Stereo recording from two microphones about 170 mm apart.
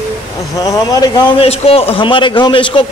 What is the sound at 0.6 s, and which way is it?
Speech, 20° left (ahead or behind).